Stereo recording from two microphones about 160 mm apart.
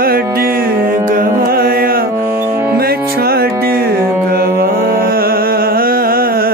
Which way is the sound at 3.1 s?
75° right (ahead or behind).